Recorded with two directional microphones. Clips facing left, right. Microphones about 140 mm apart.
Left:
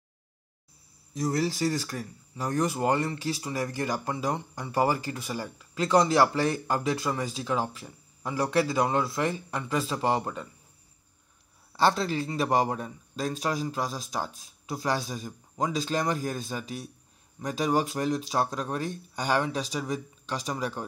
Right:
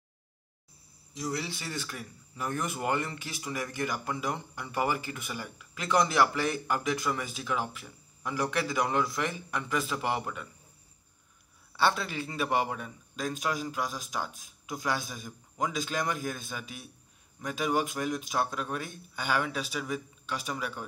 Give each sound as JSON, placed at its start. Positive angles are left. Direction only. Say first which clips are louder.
{"t": 1.1, "sound": "speech", "louder": "left 7 dB", "side_deg": 45}
{"t": 11.7, "sound": "speech", "louder": "left 4 dB", "side_deg": 35}